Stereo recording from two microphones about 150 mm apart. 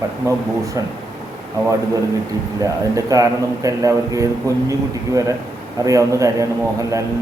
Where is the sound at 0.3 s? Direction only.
20° right (ahead or behind).